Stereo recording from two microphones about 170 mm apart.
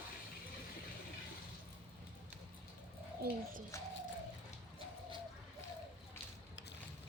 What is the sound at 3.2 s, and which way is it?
Speech, 70° right (ahead or behind).